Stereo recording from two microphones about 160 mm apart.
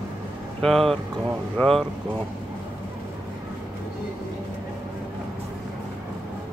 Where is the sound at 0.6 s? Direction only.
5° left (ahead or behind).